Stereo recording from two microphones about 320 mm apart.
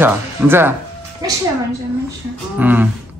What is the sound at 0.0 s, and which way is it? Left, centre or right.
Speech, centre.